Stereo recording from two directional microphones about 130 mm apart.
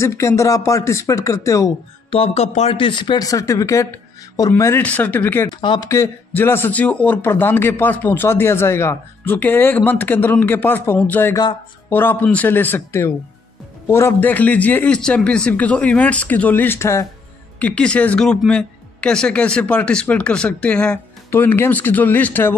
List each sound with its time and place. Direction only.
0.0 s speech: 20° left (ahead or behind)
2.0 s speech: 45° left (ahead or behind)
2.8 s a man's voice: 40° left (ahead or behind); by 5.5 s 15° left (ahead or behind)
5.6 s speech: 35° left (ahead or behind)
5.9 s a man's voice: 20° left (ahead or behind)
17.6 s a man's voice: 10° left (ahead or behind)